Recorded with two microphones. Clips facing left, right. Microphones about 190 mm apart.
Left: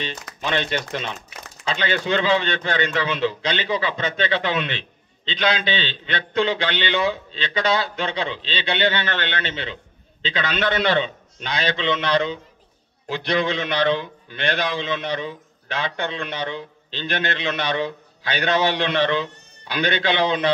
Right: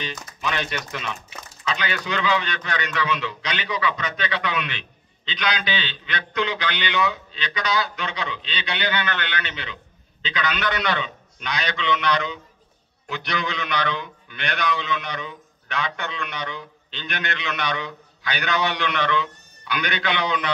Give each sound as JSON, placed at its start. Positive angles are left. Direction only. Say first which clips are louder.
{"t": 0.4, "sound": "a man's voice", "louder": "left 4 dB", "side_deg": 30}